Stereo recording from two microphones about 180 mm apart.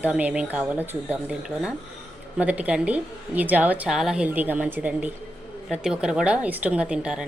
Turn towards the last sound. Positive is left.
turn(degrees=-5)  # may be behind; listen again after turning